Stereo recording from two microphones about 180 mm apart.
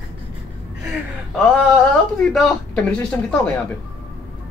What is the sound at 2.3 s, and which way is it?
Speech, centre (ahead or behind).